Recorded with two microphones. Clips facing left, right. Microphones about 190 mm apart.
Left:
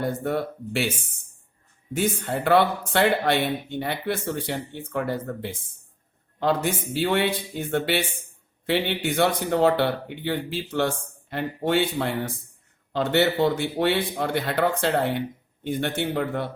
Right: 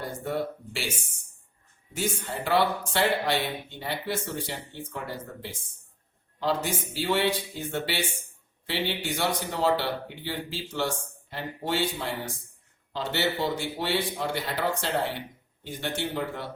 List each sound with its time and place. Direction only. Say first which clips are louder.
0.0 s speech: left 5 dB; 60° left (ahead or behind)